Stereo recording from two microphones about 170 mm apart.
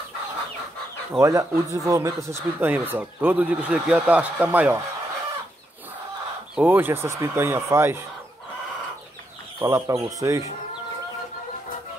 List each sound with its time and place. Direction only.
1.1 s speech: 15° right (ahead or behind)
6.5 s speech: 10° right (ahead or behind)
9.6 s speech: 15° right (ahead or behind)